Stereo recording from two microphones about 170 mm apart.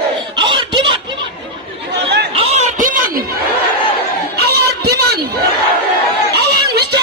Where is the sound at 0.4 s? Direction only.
30° right (ahead or behind).